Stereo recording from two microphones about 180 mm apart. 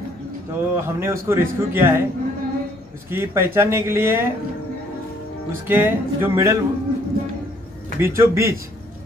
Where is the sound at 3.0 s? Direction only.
15° right (ahead or behind).